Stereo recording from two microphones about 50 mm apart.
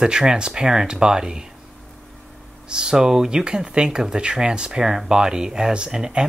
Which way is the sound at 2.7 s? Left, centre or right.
Centre.